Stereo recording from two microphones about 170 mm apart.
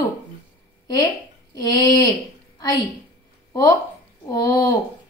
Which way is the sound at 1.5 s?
25° left (ahead or behind).